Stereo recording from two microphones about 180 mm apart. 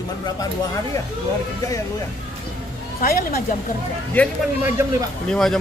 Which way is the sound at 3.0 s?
50° left (ahead or behind).